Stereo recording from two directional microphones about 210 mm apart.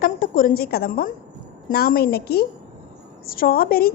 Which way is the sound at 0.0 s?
40° left (ahead or behind).